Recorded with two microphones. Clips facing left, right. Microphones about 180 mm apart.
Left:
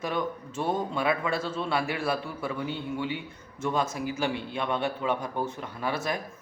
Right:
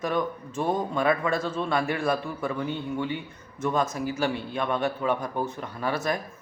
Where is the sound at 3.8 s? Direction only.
10° left (ahead or behind).